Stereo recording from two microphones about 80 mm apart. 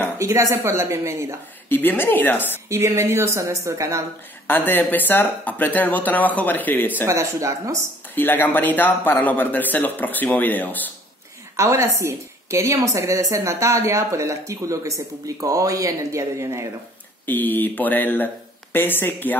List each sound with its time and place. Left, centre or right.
0.2 s a woman's voice: right
1.7 s speech: left
2.7 s a woman's voice: right
4.5 s speech: left
7.1 s a woman's voice: right
8.1 s speech: left
11.5 s a woman's voice: right
17.3 s speech: left